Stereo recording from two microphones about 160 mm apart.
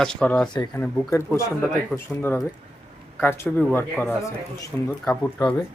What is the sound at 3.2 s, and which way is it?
Speech, 15° left (ahead or behind).